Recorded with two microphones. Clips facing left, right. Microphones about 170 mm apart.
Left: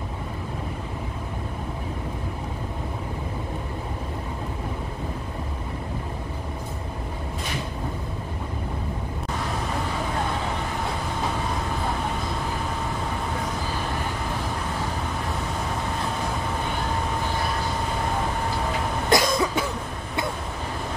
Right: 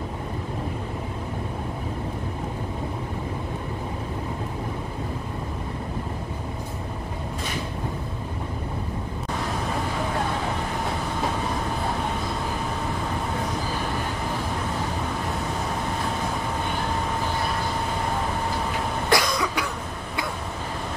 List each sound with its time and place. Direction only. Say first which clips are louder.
19.0 s cough: left 3 dB; 20° left (ahead or behind)